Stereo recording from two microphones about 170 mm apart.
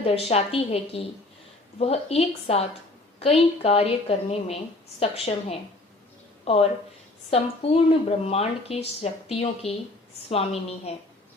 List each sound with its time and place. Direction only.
0.0 s speech: 35° left (ahead or behind)